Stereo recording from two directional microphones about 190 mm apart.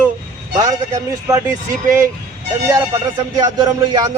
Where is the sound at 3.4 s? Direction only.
20° right (ahead or behind).